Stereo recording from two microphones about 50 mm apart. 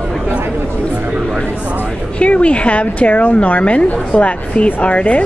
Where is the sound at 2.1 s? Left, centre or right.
Left.